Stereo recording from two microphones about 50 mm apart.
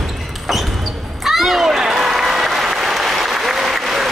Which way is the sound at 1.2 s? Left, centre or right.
Centre.